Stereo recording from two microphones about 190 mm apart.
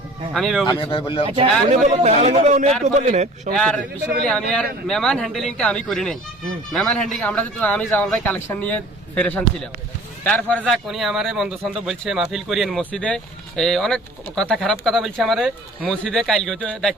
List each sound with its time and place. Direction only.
0.3 s speech: centre (ahead or behind)
0.6 s speech: 25° left (ahead or behind)
1.8 s a man's voice: 40° right (ahead or behind)
3.6 s speech: 5° left (ahead or behind)